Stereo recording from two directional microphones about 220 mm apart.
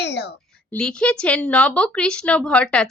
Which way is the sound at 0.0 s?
50° left (ahead or behind).